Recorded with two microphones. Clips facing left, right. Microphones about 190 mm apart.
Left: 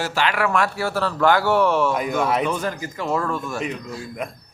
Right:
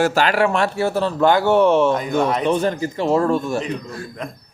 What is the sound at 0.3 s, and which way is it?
Speech, 25° right (ahead or behind).